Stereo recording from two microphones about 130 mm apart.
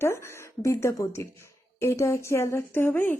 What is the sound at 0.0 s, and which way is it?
A woman's voice, 20° left (ahead or behind).